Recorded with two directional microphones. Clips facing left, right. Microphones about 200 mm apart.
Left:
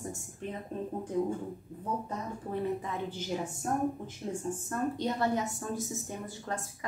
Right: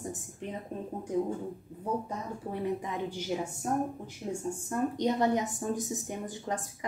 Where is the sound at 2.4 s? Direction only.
15° right (ahead or behind).